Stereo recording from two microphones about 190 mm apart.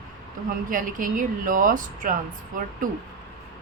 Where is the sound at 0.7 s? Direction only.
45° right (ahead or behind).